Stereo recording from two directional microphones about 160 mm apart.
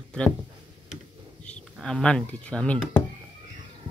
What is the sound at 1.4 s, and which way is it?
Speech, 5° left (ahead or behind).